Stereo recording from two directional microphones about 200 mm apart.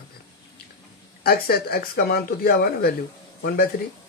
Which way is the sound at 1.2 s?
50° left (ahead or behind).